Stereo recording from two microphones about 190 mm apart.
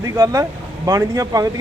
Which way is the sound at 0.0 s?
15° right (ahead or behind).